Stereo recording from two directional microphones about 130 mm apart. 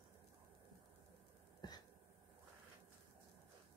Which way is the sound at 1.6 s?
30° left (ahead or behind).